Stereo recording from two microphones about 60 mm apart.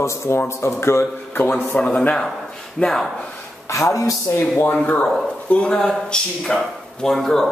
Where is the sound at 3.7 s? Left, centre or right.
Left.